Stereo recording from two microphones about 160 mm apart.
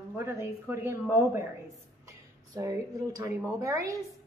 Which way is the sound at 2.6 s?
20° right (ahead or behind).